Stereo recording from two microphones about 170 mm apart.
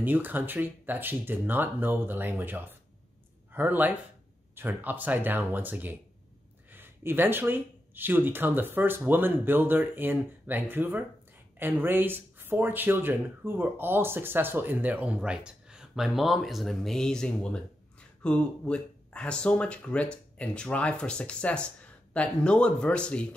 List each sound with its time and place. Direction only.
0.0 s speech: 10° right (ahead or behind); by 23.2 s 5° left (ahead or behind)